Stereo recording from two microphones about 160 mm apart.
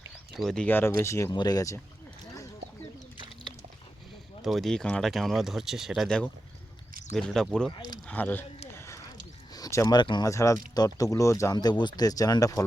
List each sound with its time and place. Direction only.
0.3 s speech: 5° left (ahead or behind); by 1.8 s 20° left (ahead or behind)
4.4 s speech: centre (ahead or behind)
8.7 s a sound: 20° left (ahead or behind)
9.5 s speech: 20° left (ahead or behind)